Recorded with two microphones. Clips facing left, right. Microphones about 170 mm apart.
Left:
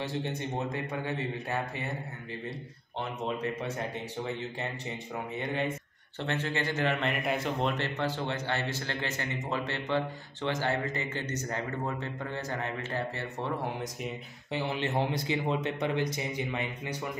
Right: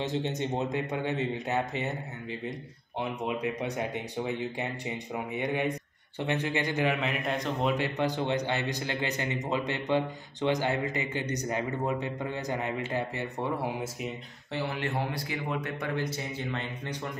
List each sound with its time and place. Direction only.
0.0 s speech: 20° right (ahead or behind)
3.0 s a man's voice: 15° right (ahead or behind); by 7.7 s 5° left (ahead or behind)
7.7 s a man's voice: 15° right (ahead or behind)
14.5 s speech: 20° left (ahead or behind)